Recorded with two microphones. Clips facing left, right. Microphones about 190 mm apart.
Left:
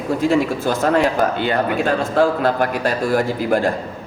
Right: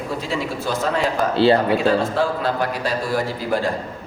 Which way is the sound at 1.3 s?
30° right (ahead or behind).